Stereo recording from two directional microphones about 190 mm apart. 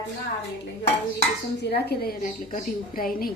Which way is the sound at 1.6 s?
60° left (ahead or behind).